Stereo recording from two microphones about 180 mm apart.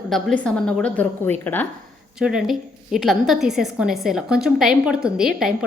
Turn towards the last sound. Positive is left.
turn(degrees=-5)  # may be behind; listen again after turning